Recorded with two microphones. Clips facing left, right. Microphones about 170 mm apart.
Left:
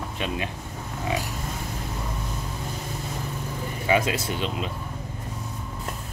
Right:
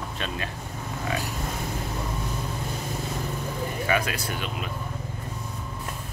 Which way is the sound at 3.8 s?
20° left (ahead or behind).